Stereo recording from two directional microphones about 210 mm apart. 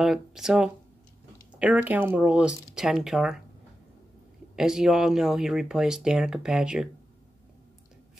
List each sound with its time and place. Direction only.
0.0 s speech: centre (ahead or behind)
4.6 s speech: centre (ahead or behind)